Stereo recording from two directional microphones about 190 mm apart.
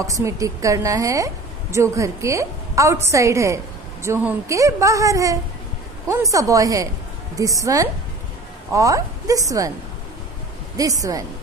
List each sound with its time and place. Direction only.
0.0 s a woman's voice: 15° right (ahead or behind)
10.8 s a woman's voice: 20° right (ahead or behind)